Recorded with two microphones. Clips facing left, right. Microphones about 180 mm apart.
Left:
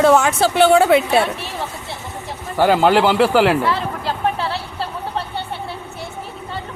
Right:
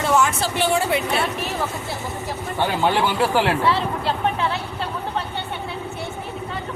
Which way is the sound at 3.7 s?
40° left (ahead or behind).